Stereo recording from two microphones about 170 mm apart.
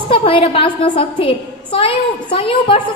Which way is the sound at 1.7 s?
30° left (ahead or behind).